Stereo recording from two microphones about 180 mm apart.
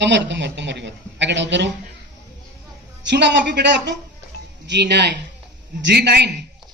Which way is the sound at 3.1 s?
75° right (ahead or behind).